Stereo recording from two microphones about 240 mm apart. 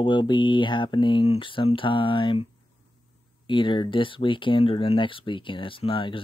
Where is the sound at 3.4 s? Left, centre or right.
Left.